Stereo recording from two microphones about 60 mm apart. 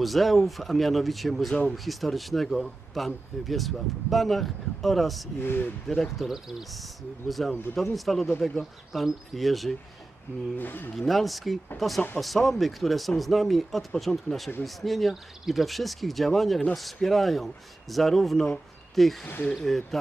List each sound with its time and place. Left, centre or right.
0.0 s speech: centre
5.4 s speech: left
6.1 s speech: centre
10.6 s speech: left
11.0 s speech: centre
19.2 s speech: left
19.5 s speech: centre